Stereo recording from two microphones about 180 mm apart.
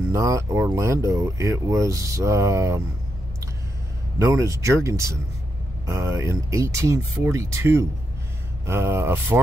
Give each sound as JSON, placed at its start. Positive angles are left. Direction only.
{"t": 0.1, "sound": "speech", "side_deg": -15}
{"t": 4.2, "sound": "speech", "side_deg": -20}